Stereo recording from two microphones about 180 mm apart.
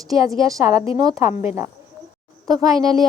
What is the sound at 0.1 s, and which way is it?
A woman's voice, 20° right (ahead or behind).